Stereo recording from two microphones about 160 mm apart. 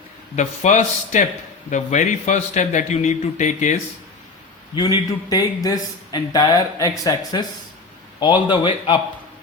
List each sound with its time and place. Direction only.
0.3 s a man's voice: 50° left (ahead or behind)
4.7 s a man's voice: 25° left (ahead or behind)